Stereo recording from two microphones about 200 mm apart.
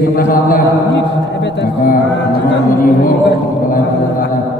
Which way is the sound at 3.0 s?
45° left (ahead or behind).